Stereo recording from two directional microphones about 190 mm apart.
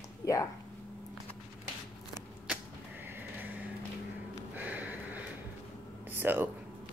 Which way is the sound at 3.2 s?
10° right (ahead or behind).